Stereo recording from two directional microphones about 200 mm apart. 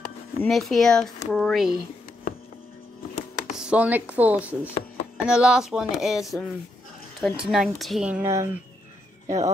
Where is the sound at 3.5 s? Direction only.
5° right (ahead or behind).